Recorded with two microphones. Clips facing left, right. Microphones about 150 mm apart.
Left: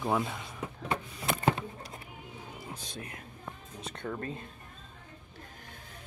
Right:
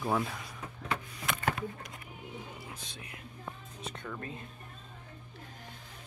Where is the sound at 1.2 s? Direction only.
30° left (ahead or behind).